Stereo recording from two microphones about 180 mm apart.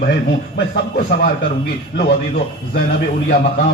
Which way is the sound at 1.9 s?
60° left (ahead or behind).